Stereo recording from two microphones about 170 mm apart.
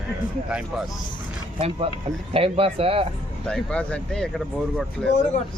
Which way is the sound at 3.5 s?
5° left (ahead or behind).